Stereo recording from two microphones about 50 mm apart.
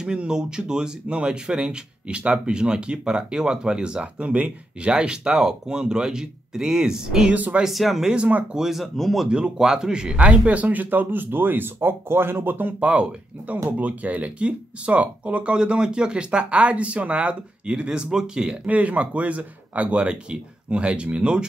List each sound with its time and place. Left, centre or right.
0.0 s speech: centre
7.6 s a man's voice: centre
8.1 s speech: right
8.5 s a man's voice: centre
9.3 s speech: centre; by 12.7 s right
12.8 s speech: right
18.7 s speech: right